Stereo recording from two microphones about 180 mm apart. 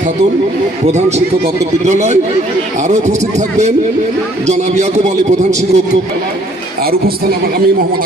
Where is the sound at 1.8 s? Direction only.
40° right (ahead or behind).